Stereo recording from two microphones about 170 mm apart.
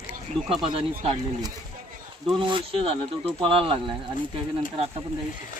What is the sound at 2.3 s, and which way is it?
Speech, 30° right (ahead or behind).